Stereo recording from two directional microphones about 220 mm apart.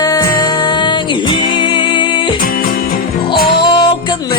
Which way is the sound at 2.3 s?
40° left (ahead or behind).